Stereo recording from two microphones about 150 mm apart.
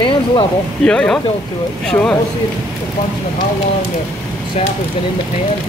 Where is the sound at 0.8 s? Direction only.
5° left (ahead or behind).